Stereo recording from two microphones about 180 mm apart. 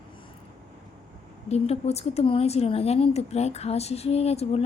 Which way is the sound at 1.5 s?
35° left (ahead or behind).